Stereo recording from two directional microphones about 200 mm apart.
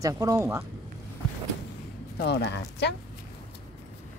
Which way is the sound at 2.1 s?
55° left (ahead or behind).